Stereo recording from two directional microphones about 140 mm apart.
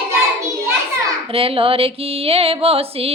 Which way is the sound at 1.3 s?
40° right (ahead or behind).